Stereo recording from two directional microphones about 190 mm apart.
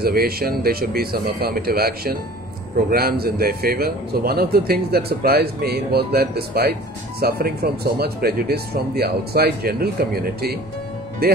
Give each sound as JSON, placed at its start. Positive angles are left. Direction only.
{"t": 0.0, "sound": "a man's voice", "side_deg": -50}